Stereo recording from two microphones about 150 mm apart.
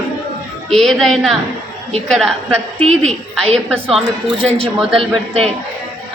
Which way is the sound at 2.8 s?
45° right (ahead or behind).